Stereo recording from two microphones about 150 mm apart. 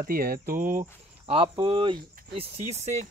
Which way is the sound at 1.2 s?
35° right (ahead or behind).